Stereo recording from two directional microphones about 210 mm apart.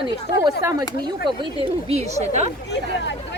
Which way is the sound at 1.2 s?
25° right (ahead or behind).